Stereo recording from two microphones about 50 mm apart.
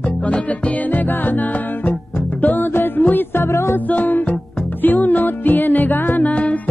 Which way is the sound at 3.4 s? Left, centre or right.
Left.